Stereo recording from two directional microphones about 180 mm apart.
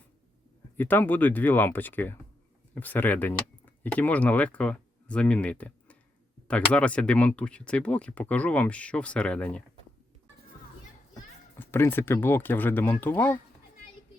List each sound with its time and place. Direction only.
0.8 s speech: 10° left (ahead or behind)
11.6 s speech: 10° left (ahead or behind)